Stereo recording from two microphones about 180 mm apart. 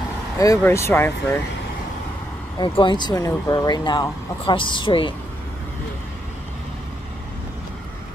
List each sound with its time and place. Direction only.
0.4 s speech: 15° left (ahead or behind)
2.6 s speech: 25° left (ahead or behind)